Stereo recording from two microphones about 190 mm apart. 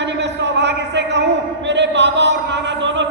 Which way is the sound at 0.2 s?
65° right (ahead or behind).